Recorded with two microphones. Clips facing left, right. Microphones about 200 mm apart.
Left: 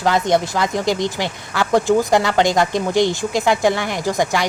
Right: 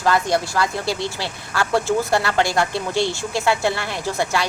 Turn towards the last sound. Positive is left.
turn(degrees=15)  # may be behind; listen again after turning